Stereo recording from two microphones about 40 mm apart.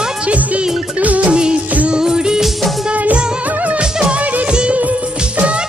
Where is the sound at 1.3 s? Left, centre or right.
Right.